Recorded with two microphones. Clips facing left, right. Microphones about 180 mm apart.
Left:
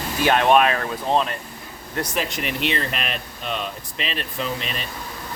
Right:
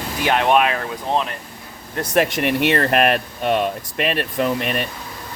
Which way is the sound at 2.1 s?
60° right (ahead or behind).